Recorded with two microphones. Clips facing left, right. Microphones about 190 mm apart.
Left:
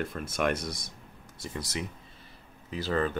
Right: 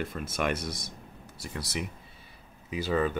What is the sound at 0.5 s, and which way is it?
Speech, 60° right (ahead or behind).